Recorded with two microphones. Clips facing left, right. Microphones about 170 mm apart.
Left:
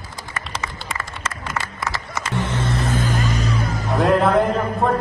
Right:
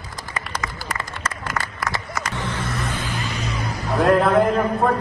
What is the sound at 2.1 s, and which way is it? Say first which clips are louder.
Music: left 3 dB; 20° left (ahead or behind).